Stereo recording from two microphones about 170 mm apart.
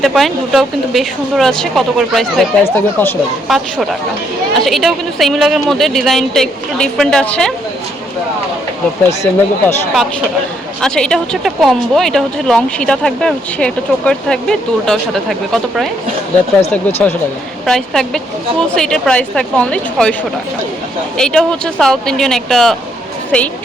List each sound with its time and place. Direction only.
0.0 s speech: centre (ahead or behind)
2.6 s speech: 15° left (ahead or behind)
3.5 s speech: centre (ahead or behind)
9.0 s speech: 15° left (ahead or behind)
10.8 s speech: 5° left (ahead or behind)
21.2 s speech: 5° left (ahead or behind)